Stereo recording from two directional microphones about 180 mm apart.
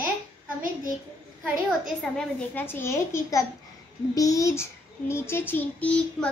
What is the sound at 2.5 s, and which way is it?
A child's voice, 10° left (ahead or behind).